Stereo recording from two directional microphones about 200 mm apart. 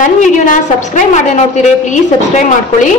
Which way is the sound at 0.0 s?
40° left (ahead or behind).